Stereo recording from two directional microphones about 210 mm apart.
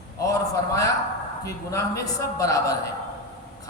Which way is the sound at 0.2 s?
15° left (ahead or behind).